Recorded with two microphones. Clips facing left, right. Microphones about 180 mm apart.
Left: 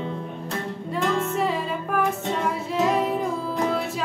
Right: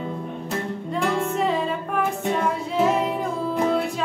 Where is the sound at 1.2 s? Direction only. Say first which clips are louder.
Right 2 dB; centre (ahead or behind).